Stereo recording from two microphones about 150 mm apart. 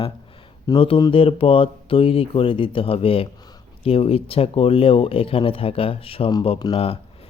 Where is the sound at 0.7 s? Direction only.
35° left (ahead or behind).